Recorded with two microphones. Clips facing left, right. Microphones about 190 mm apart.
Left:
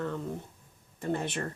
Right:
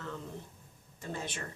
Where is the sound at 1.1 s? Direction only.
60° left (ahead or behind).